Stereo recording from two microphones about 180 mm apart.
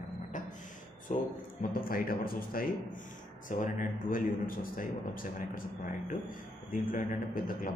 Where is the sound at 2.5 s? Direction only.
55° left (ahead or behind).